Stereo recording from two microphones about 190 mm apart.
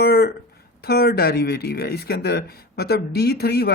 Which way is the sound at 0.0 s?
55° left (ahead or behind).